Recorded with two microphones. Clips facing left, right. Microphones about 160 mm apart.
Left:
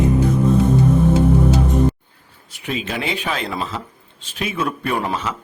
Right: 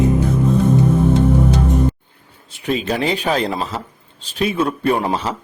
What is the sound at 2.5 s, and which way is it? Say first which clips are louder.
Speech: right 5 dB; 40° right (ahead or behind).